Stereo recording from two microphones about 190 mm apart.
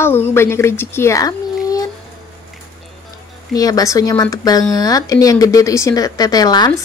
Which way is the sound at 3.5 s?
20° left (ahead or behind).